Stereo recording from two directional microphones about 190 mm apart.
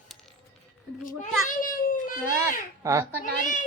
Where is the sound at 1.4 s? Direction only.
45° left (ahead or behind).